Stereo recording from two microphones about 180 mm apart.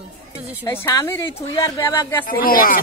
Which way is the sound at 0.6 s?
15° left (ahead or behind).